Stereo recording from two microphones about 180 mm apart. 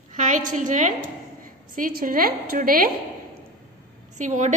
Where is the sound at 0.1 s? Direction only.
45° right (ahead or behind).